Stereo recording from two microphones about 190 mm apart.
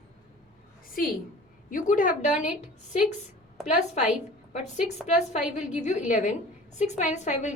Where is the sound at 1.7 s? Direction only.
45° left (ahead or behind).